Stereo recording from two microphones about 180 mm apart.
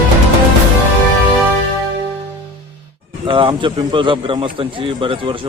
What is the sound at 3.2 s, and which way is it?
A man's voice, 25° right (ahead or behind).